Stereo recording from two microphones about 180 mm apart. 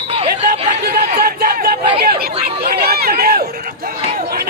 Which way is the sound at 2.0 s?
55° right (ahead or behind).